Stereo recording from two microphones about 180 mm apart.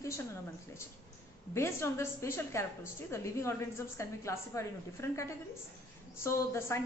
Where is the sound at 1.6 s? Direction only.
15° left (ahead or behind).